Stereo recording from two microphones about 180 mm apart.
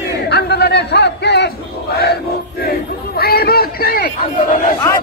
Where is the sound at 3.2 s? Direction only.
60° left (ahead or behind).